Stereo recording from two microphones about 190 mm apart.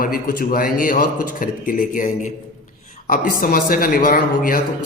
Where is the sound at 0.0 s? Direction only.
50° left (ahead or behind).